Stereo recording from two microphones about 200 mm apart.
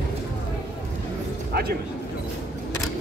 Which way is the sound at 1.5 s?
50° right (ahead or behind).